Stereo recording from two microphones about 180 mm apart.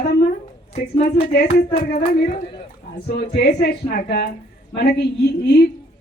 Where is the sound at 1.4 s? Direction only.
60° left (ahead or behind).